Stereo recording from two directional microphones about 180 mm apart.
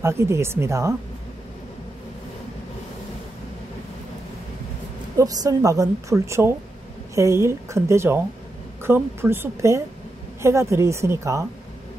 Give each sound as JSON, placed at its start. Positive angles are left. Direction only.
{"t": 0.0, "sound": "a woman's voice", "side_deg": -15}
{"t": 5.1, "sound": "a woman's voice", "side_deg": -20}